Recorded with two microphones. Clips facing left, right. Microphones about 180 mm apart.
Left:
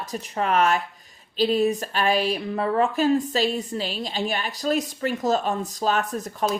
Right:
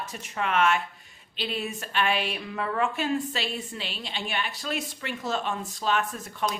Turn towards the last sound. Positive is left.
turn(degrees=40)  # may be behind; listen again after turning